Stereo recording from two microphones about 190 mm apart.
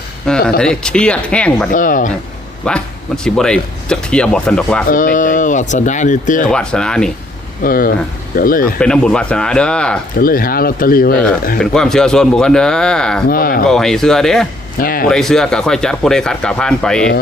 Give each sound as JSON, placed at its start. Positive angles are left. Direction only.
{"t": 0.3, "sound": "speech", "side_deg": 5}
{"t": 1.7, "sound": "speech", "side_deg": 45}
{"t": 2.6, "sound": "speech", "side_deg": 5}
{"t": 4.9, "sound": "speech", "side_deg": 45}
{"t": 6.5, "sound": "speech", "side_deg": 5}
{"t": 7.6, "sound": "speech", "side_deg": 50}
{"t": 8.8, "sound": "speech", "side_deg": 5}
{"t": 10.2, "sound": "speech", "side_deg": 50}
{"t": 11.6, "sound": "speech", "side_deg": 5}
{"t": 13.2, "sound": "speech", "side_deg": 50}
{"t": 13.7, "sound": "speech", "side_deg": 5}
{"t": 14.8, "sound": "speech", "side_deg": 50}
{"t": 15.1, "sound": "speech", "side_deg": 5}